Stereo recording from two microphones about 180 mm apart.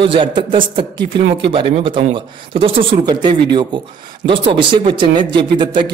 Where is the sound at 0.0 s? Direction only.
30° right (ahead or behind).